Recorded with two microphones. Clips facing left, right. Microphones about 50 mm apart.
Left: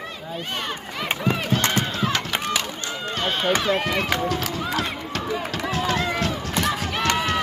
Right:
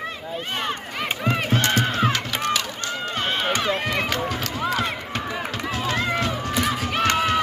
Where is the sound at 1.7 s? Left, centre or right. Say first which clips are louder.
Right 3 dB; right.